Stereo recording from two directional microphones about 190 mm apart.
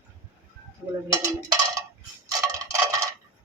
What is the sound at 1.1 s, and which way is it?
Cowbell, 20° right (ahead or behind).